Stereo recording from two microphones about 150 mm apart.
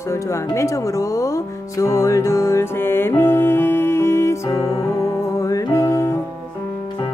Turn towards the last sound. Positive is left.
turn(degrees=20)  # may be behind; listen again after turning